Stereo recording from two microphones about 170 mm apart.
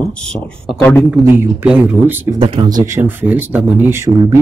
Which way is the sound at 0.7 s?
10° left (ahead or behind).